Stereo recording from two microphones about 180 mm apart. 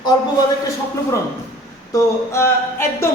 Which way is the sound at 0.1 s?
20° left (ahead or behind).